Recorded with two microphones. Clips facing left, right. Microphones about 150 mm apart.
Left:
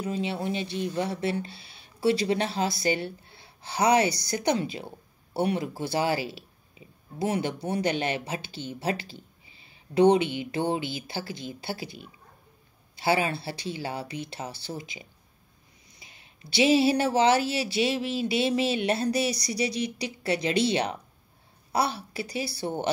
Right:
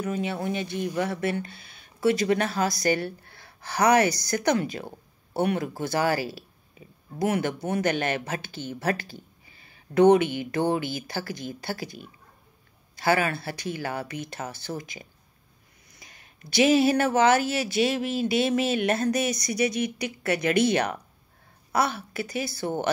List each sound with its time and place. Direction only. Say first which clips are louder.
0.0 s speech: right 1 dB; 25° left (ahead or behind)
1.3 s speech: even; 50° right (ahead or behind)
2.6 s speech: right 2 dB; 25° left (ahead or behind)
2.9 s speech: right 2 dB; 50° right (ahead or behind)
3.3 s speech: right 2 dB; 25° left (ahead or behind)
4.6 s speech: right 2 dB; 50° right (ahead or behind)
6.3 s a sound: right 2 dB; 20° left (ahead or behind)
7.2 s speech: right 2 dB; 55° right (ahead or behind)